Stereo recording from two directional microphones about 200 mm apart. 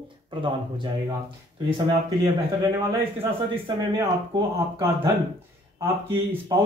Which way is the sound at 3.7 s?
20° right (ahead or behind).